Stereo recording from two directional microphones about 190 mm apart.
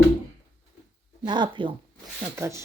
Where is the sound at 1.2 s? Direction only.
25° right (ahead or behind).